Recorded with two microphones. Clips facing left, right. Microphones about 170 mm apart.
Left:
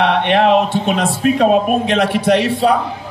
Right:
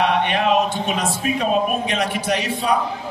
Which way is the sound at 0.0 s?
60° left (ahead or behind).